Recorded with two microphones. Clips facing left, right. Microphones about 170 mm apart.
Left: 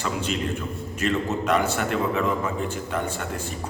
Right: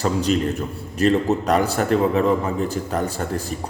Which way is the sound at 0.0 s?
40° right (ahead or behind).